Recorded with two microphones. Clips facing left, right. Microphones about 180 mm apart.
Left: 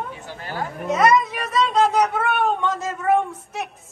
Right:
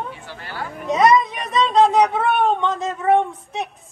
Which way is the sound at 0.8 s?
5° left (ahead or behind).